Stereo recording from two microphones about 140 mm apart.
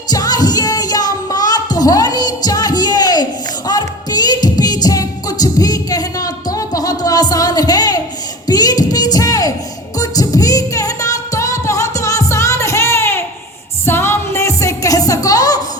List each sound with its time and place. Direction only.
0.1 s music: 25° left (ahead or behind)